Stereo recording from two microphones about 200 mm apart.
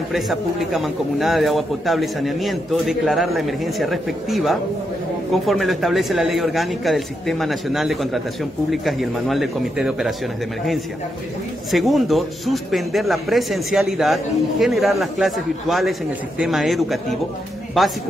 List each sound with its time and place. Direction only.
0.1 s speech: centre (ahead or behind)
11.7 s speech: centre (ahead or behind)